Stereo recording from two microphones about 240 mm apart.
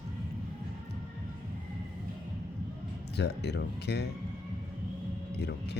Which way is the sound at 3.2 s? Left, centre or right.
Left.